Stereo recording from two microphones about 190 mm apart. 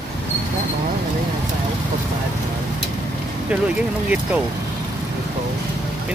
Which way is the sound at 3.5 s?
5° right (ahead or behind).